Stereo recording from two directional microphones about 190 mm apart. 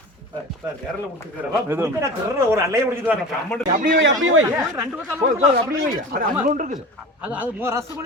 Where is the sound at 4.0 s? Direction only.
90° right.